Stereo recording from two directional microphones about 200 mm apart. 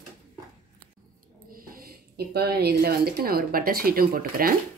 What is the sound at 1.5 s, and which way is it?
Speech, 45° right (ahead or behind).